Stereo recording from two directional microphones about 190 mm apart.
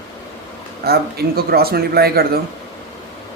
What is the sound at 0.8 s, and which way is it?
Speech, 55° right (ahead or behind).